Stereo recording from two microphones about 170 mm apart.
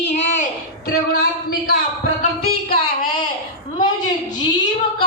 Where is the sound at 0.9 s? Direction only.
60° left (ahead or behind).